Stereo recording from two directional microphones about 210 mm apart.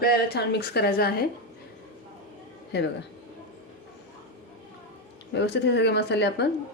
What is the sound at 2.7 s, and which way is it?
Speech, 55° left (ahead or behind).